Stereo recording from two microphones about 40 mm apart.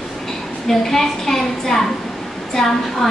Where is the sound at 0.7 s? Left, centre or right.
Centre.